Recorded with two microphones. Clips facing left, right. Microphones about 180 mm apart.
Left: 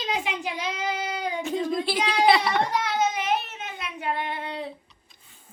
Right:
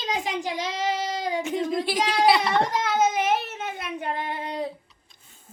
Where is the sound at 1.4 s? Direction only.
20° right (ahead or behind).